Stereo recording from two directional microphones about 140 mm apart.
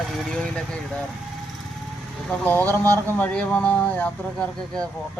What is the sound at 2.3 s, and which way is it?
Speech, 10° left (ahead or behind).